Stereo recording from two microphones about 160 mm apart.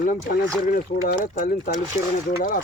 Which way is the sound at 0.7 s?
70° left (ahead or behind).